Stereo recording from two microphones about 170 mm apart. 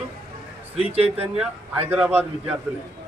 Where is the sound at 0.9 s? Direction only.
35° right (ahead or behind).